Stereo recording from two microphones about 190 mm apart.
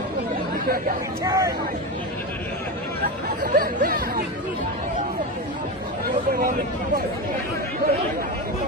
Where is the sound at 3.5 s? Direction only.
50° right (ahead or behind).